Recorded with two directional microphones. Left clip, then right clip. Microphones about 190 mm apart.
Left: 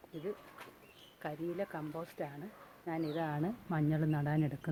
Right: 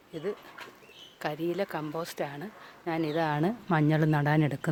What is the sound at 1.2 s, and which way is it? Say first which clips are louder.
Speech: right 8 dB; 60° right (ahead or behind).